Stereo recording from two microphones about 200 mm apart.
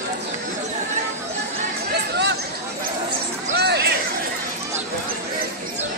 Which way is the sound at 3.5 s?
55° right (ahead or behind).